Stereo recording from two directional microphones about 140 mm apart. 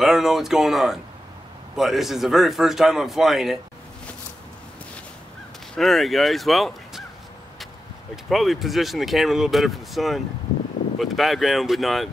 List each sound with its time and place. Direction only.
0.0 s speech: centre (ahead or behind)
5.8 s speech: centre (ahead or behind)
8.3 s speech: centre (ahead or behind)